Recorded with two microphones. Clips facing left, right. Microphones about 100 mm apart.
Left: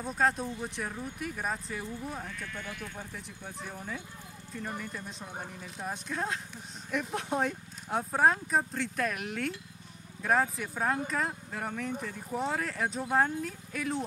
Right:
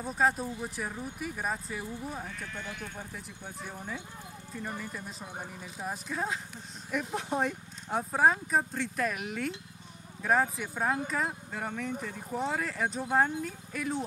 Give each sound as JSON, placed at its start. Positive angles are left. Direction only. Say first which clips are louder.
{"t": 0.0, "sound": "speech", "louder": "right 1 dB", "side_deg": -5}
{"t": 2.2, "sound": "speech", "louder": "even", "side_deg": -25}
{"t": 3.0, "sound": "speech", "louder": "even", "side_deg": -5}